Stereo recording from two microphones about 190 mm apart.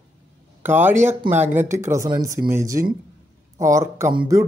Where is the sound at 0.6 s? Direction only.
10° right (ahead or behind).